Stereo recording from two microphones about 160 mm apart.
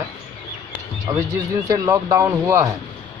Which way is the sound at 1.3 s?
20° right (ahead or behind).